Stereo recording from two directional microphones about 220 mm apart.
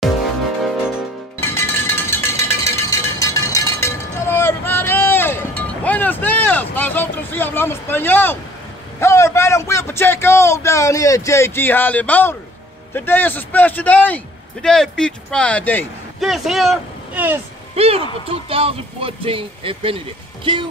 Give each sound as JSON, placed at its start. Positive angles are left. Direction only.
{"t": 1.4, "sound": "a sound", "side_deg": 10}
{"t": 9.0, "sound": "a man's voice", "side_deg": 10}
{"t": 17.7, "sound": "speech", "side_deg": -25}